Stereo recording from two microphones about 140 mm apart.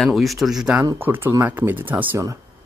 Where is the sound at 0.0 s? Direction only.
Centre (ahead or behind).